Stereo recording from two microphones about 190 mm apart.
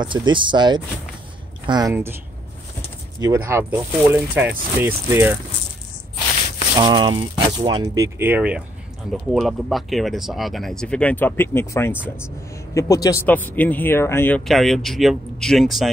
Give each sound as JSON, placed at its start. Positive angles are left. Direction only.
{"t": 0.0, "sound": "speech", "side_deg": -25}
{"t": 3.2, "sound": "speech", "side_deg": -15}
{"t": 6.8, "sound": "speech", "side_deg": -25}